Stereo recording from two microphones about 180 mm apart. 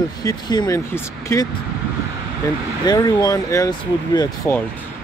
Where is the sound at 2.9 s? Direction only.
20° left (ahead or behind).